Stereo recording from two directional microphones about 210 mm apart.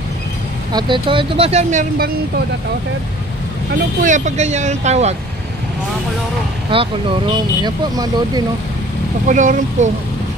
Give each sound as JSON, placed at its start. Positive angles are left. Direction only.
{"t": 0.7, "sound": "speech", "side_deg": -20}
{"t": 4.0, "sound": "speech", "side_deg": -35}
{"t": 6.7, "sound": "speech", "side_deg": -25}
{"t": 9.3, "sound": "speech", "side_deg": -35}